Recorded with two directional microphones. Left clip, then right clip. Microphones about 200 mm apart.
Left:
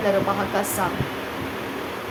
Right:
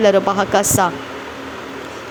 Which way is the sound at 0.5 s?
40° right (ahead or behind).